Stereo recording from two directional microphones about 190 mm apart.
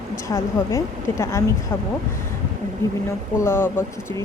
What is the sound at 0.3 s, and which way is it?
Speech, 15° left (ahead or behind).